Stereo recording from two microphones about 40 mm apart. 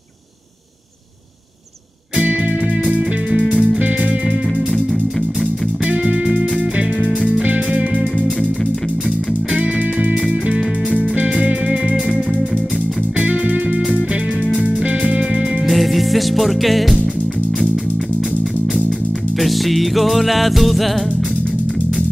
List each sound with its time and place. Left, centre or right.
3.3 s music: right
5.9 s music: right
9.6 s music: right
13.2 s music: right
15.6 s music: centre
19.4 s music: centre